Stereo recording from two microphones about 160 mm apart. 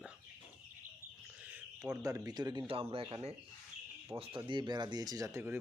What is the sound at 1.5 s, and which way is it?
A man's voice, 15° right (ahead or behind).